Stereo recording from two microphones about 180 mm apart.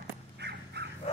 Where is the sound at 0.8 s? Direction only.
65° right (ahead or behind).